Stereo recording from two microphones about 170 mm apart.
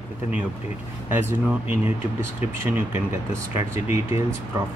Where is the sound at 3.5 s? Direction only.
15° right (ahead or behind).